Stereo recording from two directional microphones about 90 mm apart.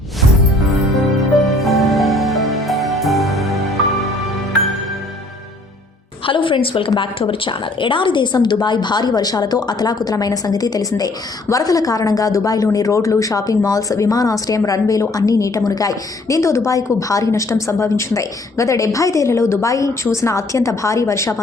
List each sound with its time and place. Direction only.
1.6 s music: centre (ahead or behind)
6.2 s a woman's voice: 70° left (ahead or behind); by 21.4 s 35° left (ahead or behind)